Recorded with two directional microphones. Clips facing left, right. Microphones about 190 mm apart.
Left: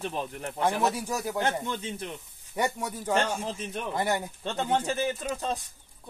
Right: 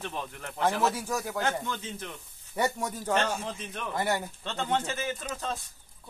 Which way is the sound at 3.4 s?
25° left (ahead or behind).